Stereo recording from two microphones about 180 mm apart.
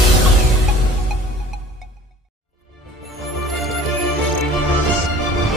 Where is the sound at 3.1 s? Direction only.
Centre (ahead or behind).